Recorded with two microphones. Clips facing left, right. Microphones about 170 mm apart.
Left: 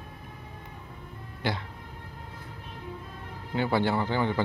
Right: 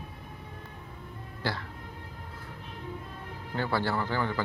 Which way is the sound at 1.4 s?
20° left (ahead or behind).